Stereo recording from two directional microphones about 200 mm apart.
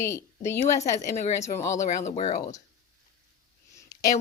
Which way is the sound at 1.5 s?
15° left (ahead or behind).